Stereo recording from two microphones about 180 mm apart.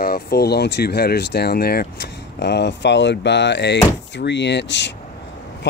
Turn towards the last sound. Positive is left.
turn(degrees=75)  # may be behind; listen again after turning